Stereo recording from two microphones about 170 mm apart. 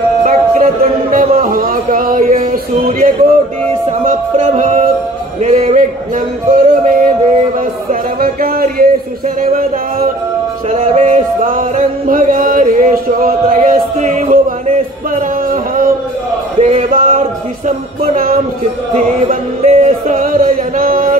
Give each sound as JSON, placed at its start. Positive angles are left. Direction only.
{"t": 0.2, "sound": "music", "side_deg": -50}
{"t": 1.1, "sound": "a sound", "side_deg": -55}
{"t": 2.4, "sound": "music", "side_deg": -55}
{"t": 5.4, "sound": "a sound", "side_deg": -45}
{"t": 7.9, "sound": "music", "side_deg": -60}
{"t": 10.7, "sound": "music", "side_deg": -40}
{"t": 16.6, "sound": "a sound", "side_deg": -45}
{"t": 17.6, "sound": "music", "side_deg": -50}
{"t": 19.2, "sound": "music", "side_deg": -40}